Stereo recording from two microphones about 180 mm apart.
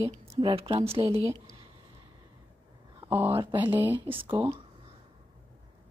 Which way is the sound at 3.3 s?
30° right (ahead or behind).